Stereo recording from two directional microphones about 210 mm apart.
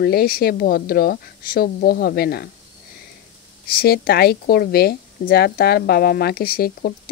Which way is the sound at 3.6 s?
45° left (ahead or behind).